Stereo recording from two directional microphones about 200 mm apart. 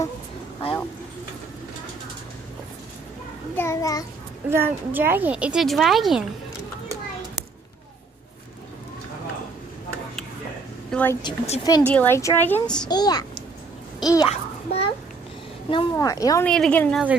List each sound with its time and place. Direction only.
3.5 s a sound: 15° left (ahead or behind)
4.5 s speech: 10° right (ahead or behind)
10.9 s a sound: 10° left (ahead or behind)
11.2 s speech: 30° left (ahead or behind)
11.6 s a child's voice: 20° left (ahead or behind)
12.8 s a child's voice: 20° left (ahead or behind)
14.3 s babbling: 30° left (ahead or behind)
15.7 s a woman's voice: 20° left (ahead or behind)
16.4 s speech: 5° left (ahead or behind)